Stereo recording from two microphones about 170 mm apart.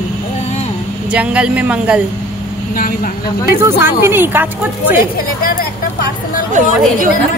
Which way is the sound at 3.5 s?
15° right (ahead or behind).